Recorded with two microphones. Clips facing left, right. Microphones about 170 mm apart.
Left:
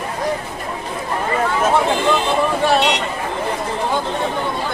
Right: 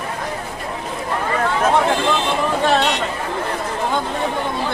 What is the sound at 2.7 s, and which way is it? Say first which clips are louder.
Vehicle: left 1 dB; 15° left (ahead or behind).